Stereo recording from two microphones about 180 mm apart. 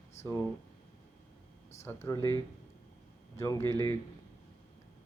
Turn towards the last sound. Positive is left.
turn(degrees=15)  # may be behind; listen again after turning